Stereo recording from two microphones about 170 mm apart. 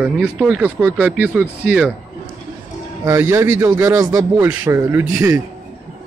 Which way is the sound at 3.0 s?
15° right (ahead or behind).